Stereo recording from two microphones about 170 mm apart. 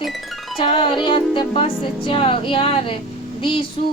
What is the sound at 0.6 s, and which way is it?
Music, 30° left (ahead or behind).